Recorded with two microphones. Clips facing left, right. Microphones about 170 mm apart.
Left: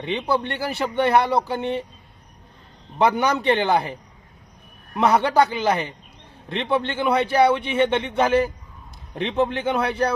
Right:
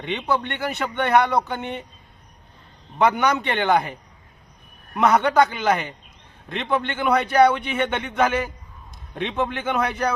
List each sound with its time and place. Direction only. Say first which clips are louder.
0.0 s speech: left 1 dB; 35° left (ahead or behind)
3.0 s speech: even; 30° left (ahead or behind)
4.9 s a man's voice: even; 30° left (ahead or behind)